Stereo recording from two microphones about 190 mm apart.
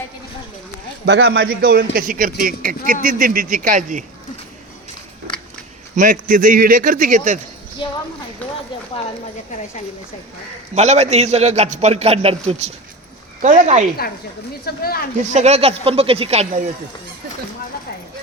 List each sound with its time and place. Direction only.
1.0 s a man's voice: 65° right (ahead or behind); by 4.0 s 40° right (ahead or behind)
6.0 s a man's voice: 45° right (ahead or behind)
8.4 s a sound: 10° left (ahead or behind)
10.8 s a man's voice: 35° right (ahead or behind)
14.6 s speech: 55° left (ahead or behind)
15.2 s a man's voice: 40° right (ahead or behind)